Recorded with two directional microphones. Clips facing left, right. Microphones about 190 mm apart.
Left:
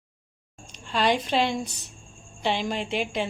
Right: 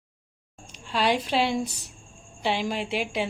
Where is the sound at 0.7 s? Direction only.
5° right (ahead or behind).